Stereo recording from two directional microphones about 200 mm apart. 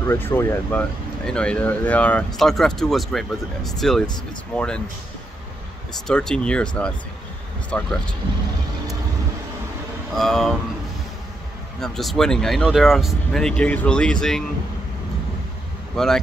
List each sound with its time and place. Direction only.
0.0 s speech: 10° left (ahead or behind)
6.0 s speech: 5° left (ahead or behind)
7.7 s speech: 5° left (ahead or behind)
10.1 s speech: centre (ahead or behind)
11.8 s speech: centre (ahead or behind)
16.0 s speech: centre (ahead or behind)